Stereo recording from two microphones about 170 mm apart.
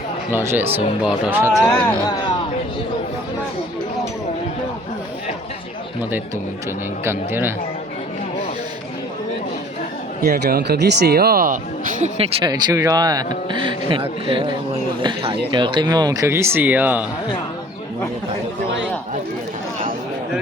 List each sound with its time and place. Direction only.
0.3 s speech: 15° right (ahead or behind)
6.0 s speech: 10° right (ahead or behind)
10.2 s speech: 60° right (ahead or behind)
12.0 s speech: 35° right (ahead or behind)
12.5 s speech: 20° right (ahead or behind)